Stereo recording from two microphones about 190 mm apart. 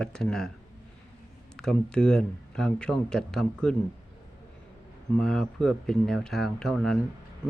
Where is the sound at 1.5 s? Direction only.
5° left (ahead or behind).